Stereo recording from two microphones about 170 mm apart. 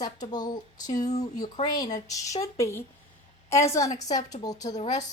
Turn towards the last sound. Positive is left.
turn(degrees=20)  # may be behind; listen again after turning